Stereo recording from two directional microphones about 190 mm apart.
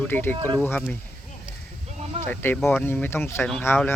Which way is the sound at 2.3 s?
10° left (ahead or behind).